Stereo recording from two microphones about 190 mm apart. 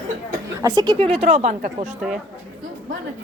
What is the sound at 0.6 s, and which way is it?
A woman's voice, 20° right (ahead or behind).